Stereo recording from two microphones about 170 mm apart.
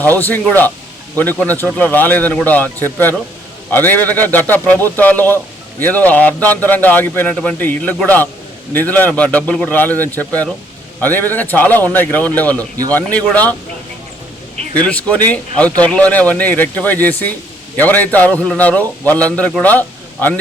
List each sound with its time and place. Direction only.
0.0 s a man's voice: 10° left (ahead or behind)
14.8 s a man's voice: 10° left (ahead or behind)